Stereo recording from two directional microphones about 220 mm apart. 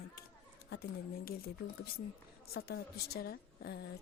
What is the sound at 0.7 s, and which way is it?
Speech, 45° left (ahead or behind).